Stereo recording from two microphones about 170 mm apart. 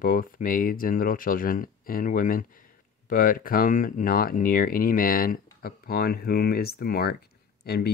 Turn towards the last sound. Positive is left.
turn(degrees=70)  # may be behind; listen again after turning